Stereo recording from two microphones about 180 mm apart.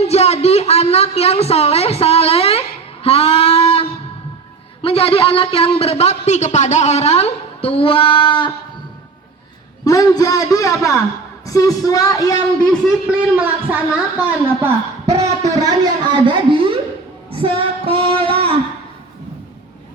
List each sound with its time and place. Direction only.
0.0 s a woman's voice: 35° left (ahead or behind)
9.8 s a man's voice: 20° left (ahead or behind)
13.1 s a woman's voice: 10° right (ahead or behind); by 16.8 s 30° right (ahead or behind)
17.3 s female singing: 30° right (ahead or behind)